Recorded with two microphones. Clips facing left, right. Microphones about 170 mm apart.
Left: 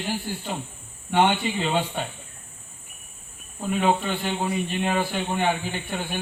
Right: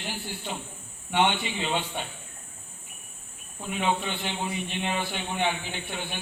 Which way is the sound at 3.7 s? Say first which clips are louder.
Left 5 dB; 45° left (ahead or behind).